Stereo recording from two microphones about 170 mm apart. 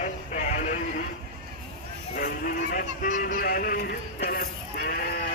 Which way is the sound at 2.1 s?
55° left (ahead or behind).